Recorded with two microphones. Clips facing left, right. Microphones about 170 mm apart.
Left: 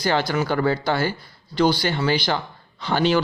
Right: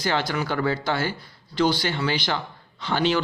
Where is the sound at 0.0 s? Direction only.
40° left (ahead or behind).